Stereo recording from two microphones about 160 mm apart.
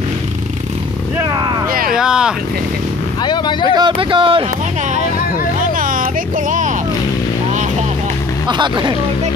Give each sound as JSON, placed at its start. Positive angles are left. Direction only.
{"t": 1.2, "sound": "vehicle", "side_deg": -25}
{"t": 1.7, "sound": "a sound", "side_deg": -65}
{"t": 2.0, "sound": "speech", "side_deg": -5}
{"t": 3.2, "sound": "vehicle", "side_deg": 30}
{"t": 3.7, "sound": "speech", "side_deg": -30}
{"t": 5.6, "sound": "music", "side_deg": -60}
{"t": 8.5, "sound": "speech", "side_deg": -30}